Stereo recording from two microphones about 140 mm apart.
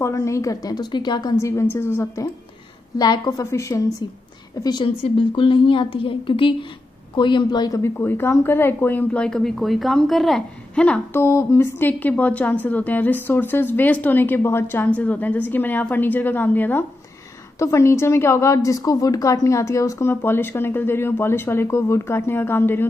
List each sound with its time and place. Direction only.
0.0 s a woman's voice: 20° left (ahead or behind)
3.0 s a woman's voice: 30° left (ahead or behind)
5.0 s a woman's voice: 35° left (ahead or behind); by 11.0 s 5° left (ahead or behind)
11.1 s a woman's voice: 20° left (ahead or behind)